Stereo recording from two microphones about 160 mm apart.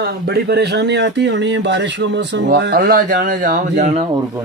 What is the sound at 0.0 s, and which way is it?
Speech, 85° right.